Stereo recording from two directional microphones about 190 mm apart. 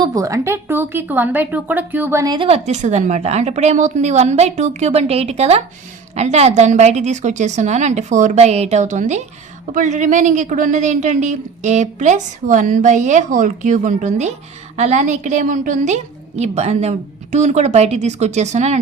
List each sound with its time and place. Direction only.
0.0 s speech: 15° right (ahead or behind); by 18.8 s 35° right (ahead or behind)